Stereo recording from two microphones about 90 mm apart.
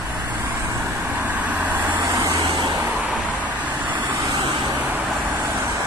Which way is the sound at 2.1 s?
45° right (ahead or behind).